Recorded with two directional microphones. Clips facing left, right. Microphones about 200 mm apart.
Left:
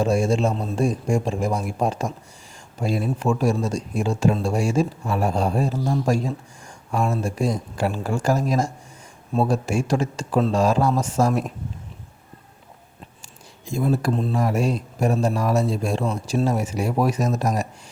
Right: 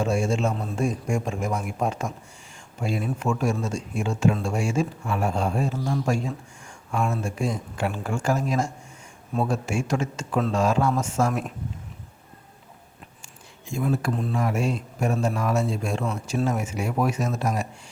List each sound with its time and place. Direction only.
0.0 s speech: 40° left (ahead or behind)
13.7 s speech: 35° left (ahead or behind)